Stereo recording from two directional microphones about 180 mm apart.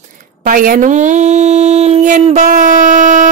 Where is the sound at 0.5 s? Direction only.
50° right (ahead or behind).